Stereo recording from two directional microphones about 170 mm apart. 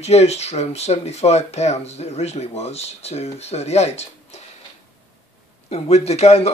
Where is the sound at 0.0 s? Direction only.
40° left (ahead or behind).